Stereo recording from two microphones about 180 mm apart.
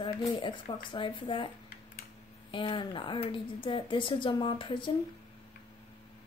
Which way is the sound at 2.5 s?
30° left (ahead or behind).